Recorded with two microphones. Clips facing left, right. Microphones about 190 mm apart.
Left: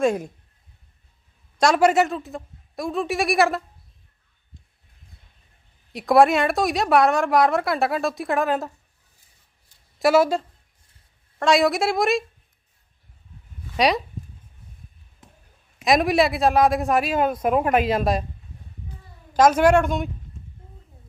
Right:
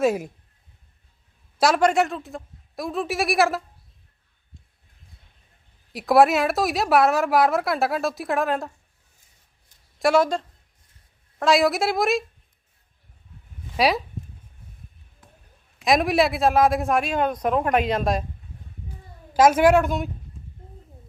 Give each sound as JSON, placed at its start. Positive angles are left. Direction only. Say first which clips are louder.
{"t": 0.0, "sound": "a woman's voice", "louder": "even", "side_deg": -5}
{"t": 1.5, "sound": "a man's voice", "louder": "left 2 dB", "side_deg": -5}
{"t": 5.9, "sound": "a woman's voice", "louder": "left 1 dB", "side_deg": 0}
{"t": 10.0, "sound": "a woman's voice", "louder": "left 2 dB", "side_deg": 5}
{"t": 13.7, "sound": "speech", "louder": "left 1 dB", "side_deg": 0}
{"t": 15.2, "sound": "a sound", "louder": "left 2 dB", "side_deg": 20}
{"t": 15.8, "sound": "a woman's voice", "louder": "left 1 dB", "side_deg": 0}
{"t": 19.3, "sound": "a woman's voice", "louder": "even", "side_deg": -10}